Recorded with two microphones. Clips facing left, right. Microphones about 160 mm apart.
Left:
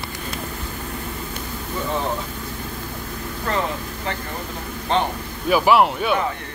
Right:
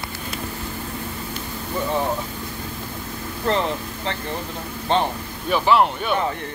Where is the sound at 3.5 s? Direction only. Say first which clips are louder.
Right 3 dB; 25° right (ahead or behind).